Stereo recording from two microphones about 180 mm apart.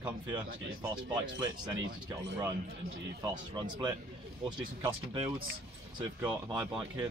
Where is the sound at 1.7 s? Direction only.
90° right.